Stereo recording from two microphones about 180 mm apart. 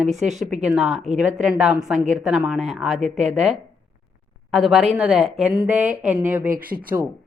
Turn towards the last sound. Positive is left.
turn(degrees=-50)  # may be behind; listen again after turning